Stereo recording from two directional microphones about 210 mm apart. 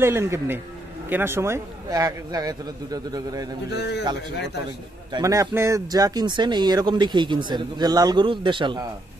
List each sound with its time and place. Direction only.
0.0 s a man's voice: 10° right (ahead or behind)
3.7 s a man's voice: 55° left (ahead or behind)
5.1 s speech: 15° right (ahead or behind)